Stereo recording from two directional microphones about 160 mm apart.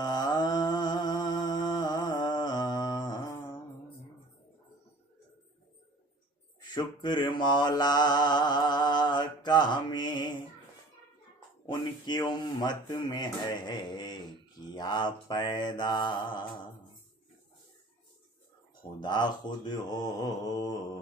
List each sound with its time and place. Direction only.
0.0 s a sound: 25° left (ahead or behind)
6.6 s mantra: 30° left (ahead or behind)
11.6 s mantra: 30° left (ahead or behind)
18.8 s mantra: 30° left (ahead or behind)